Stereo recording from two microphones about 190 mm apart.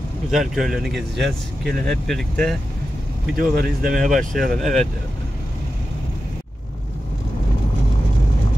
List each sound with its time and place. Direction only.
0.3 s speech: centre (ahead or behind)
3.3 s speech: 50° right (ahead or behind)
3.9 s speech: centre (ahead or behind)